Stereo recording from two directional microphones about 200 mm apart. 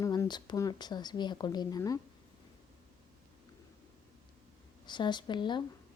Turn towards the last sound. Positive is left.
turn(degrees=25)  # may be behind; listen again after turning